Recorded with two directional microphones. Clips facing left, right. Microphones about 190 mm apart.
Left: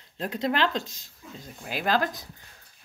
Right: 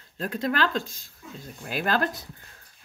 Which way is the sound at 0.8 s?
50° right (ahead or behind).